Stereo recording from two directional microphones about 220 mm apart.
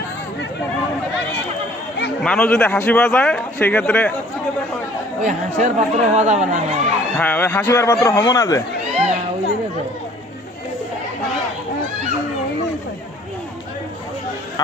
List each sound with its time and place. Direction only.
2.2 s a man's voice: 5° left (ahead or behind)
5.2 s speech: 35° right (ahead or behind)
7.2 s speech: 10° left (ahead or behind)